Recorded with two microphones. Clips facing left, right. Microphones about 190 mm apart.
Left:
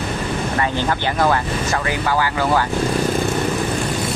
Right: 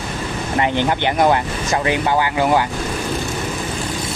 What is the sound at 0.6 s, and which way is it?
Speech, 20° right (ahead or behind).